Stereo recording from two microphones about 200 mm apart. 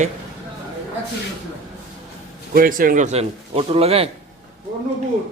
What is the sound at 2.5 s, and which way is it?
A man's voice, 45° right (ahead or behind).